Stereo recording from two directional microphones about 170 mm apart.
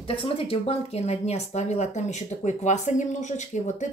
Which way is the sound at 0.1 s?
30° left (ahead or behind).